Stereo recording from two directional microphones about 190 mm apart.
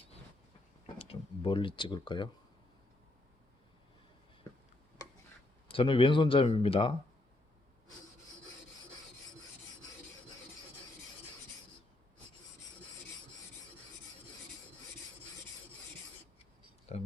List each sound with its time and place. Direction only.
0.9 s speech: 30° left (ahead or behind)
5.7 s speech: 25° left (ahead or behind)
16.9 s a sound: 30° left (ahead or behind)